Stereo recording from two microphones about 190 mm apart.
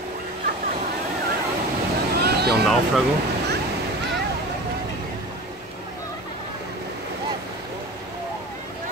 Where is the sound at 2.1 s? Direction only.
55° right (ahead or behind).